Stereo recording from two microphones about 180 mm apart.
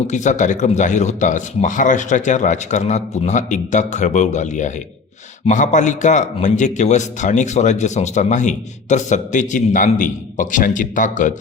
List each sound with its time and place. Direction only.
0.1 s a man's voice: 40° left (ahead or behind)